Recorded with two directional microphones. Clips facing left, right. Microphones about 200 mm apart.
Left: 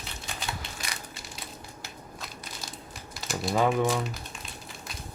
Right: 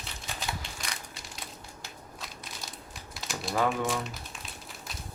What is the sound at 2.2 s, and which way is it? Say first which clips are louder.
Crumpling: left 1 dB; centre (ahead or behind).